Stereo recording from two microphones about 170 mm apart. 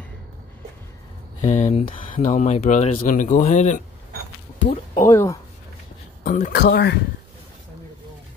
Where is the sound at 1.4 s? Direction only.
40° left (ahead or behind).